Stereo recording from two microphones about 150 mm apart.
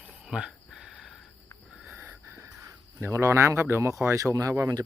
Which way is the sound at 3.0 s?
20° right (ahead or behind).